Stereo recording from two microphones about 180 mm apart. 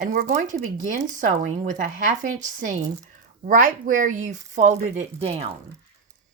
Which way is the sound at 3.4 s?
45° right (ahead or behind).